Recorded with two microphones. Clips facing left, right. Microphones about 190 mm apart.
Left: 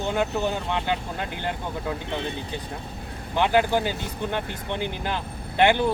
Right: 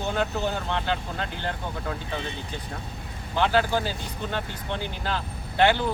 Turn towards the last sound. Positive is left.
turn(degrees=15)  # may be behind; listen again after turning